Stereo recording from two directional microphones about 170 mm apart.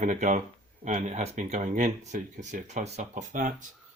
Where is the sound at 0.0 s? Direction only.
50° right (ahead or behind).